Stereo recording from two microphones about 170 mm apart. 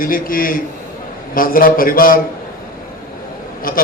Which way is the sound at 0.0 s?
55° left (ahead or behind).